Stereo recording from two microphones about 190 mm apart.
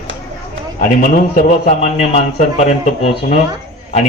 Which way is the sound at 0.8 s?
45° left (ahead or behind).